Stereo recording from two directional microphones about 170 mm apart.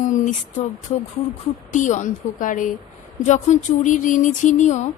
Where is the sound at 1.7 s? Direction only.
45° left (ahead or behind).